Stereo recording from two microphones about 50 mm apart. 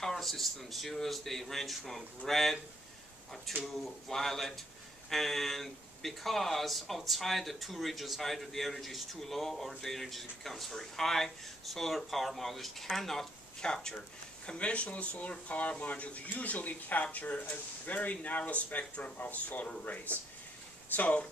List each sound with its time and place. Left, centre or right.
0.0 s speech: centre
3.6 s speech: centre; by 19.7 s left
20.9 s speech: left